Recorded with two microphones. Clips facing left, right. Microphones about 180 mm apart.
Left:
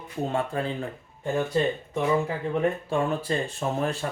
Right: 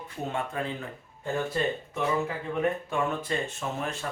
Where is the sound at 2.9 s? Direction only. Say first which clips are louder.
Left 3 dB; 35° left (ahead or behind).